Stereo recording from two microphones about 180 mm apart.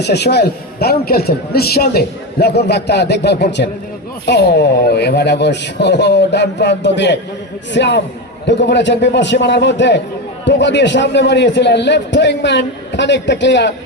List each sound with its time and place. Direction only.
0.0 s a man's voice: 65° left (ahead or behind)